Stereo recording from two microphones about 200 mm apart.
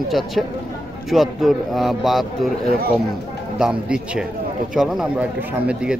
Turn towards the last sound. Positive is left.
turn(degrees=-5)  # may be behind; listen again after turning